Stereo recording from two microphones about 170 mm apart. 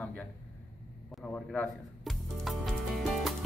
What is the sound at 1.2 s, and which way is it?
Music, 10° left (ahead or behind).